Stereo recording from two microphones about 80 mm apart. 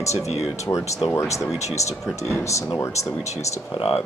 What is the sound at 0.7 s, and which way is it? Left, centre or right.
Speech, left.